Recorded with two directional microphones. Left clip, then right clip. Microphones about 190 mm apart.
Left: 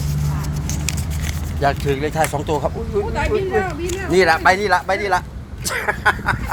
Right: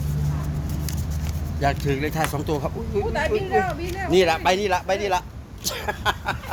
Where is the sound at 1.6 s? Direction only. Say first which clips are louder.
Left 5 dB; 15° right (ahead or behind).